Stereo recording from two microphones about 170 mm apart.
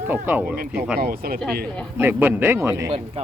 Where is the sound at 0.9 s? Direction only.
65° right (ahead or behind).